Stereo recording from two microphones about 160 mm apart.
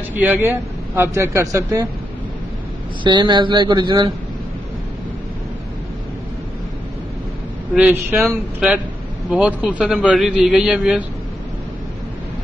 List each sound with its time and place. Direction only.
0.1 s speech: 10° right (ahead or behind)
3.0 s speech: 30° right (ahead or behind)
7.7 s a man's voice: 10° right (ahead or behind)